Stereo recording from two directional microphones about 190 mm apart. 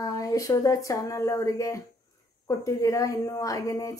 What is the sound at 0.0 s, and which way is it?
Speech, 15° left (ahead or behind).